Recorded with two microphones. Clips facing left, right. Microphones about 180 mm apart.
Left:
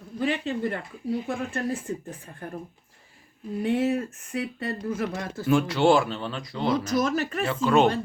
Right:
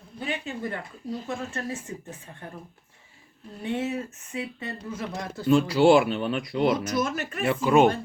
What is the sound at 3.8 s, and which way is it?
Speech, 55° left (ahead or behind).